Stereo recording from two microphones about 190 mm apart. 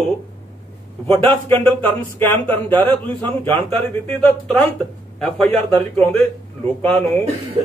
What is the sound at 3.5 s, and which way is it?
Speech, 30° right (ahead or behind).